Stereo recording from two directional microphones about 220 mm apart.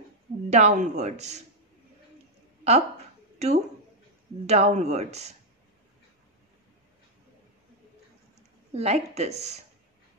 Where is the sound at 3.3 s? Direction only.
30° right (ahead or behind).